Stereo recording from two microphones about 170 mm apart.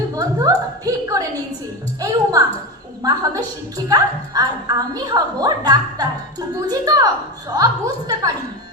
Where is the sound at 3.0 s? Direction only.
20° right (ahead or behind).